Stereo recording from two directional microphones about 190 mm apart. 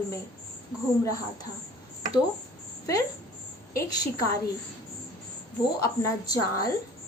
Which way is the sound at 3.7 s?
20° left (ahead or behind).